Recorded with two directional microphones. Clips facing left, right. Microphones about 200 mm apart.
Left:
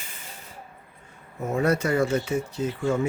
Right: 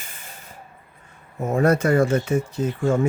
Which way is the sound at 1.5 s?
50° right (ahead or behind).